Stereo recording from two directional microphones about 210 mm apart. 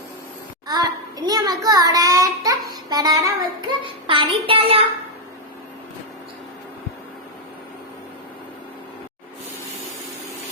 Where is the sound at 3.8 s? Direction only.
25° right (ahead or behind).